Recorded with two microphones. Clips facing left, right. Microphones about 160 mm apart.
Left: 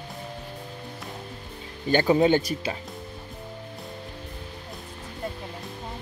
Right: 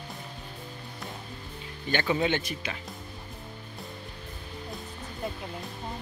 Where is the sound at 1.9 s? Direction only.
35° left (ahead or behind).